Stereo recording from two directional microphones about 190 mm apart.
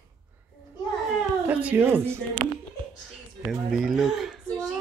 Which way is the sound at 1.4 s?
10° right (ahead or behind).